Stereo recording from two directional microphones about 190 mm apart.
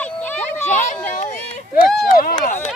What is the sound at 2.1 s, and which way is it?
Run, 45° left (ahead or behind).